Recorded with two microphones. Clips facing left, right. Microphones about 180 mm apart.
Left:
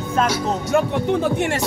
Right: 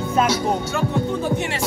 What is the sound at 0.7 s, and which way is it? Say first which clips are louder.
Speech: left 4 dB; 70° left (ahead or behind).